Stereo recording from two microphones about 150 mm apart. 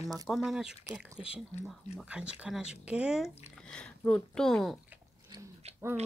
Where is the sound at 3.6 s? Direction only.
5° left (ahead or behind).